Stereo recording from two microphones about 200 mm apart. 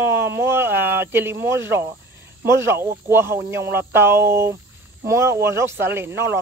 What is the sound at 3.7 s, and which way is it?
Speech, 10° right (ahead or behind).